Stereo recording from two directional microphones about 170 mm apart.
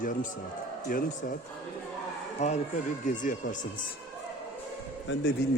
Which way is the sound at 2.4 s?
40° left (ahead or behind).